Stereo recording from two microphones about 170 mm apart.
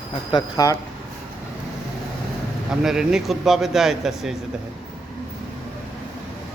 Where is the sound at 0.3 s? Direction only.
25° left (ahead or behind).